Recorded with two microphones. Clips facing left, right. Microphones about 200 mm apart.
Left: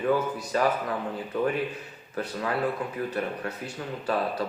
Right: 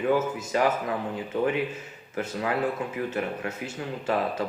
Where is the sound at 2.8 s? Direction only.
25° right (ahead or behind).